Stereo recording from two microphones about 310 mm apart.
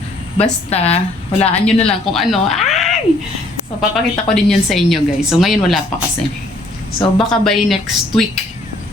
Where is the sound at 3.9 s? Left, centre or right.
Centre.